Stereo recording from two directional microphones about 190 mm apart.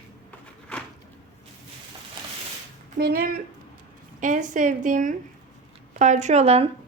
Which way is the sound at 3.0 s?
50° right (ahead or behind).